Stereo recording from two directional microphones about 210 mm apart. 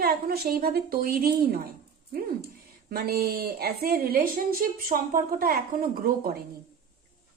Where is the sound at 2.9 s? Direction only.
45° right (ahead or behind).